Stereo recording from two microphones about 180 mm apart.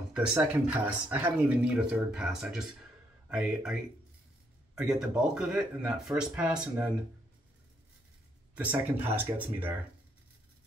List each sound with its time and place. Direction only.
0.1 s speech: 5° right (ahead or behind)
4.7 s speech: 5° right (ahead or behind)
8.5 s speech: 10° right (ahead or behind)